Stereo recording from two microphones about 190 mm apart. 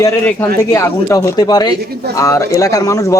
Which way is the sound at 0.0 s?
10° left (ahead or behind).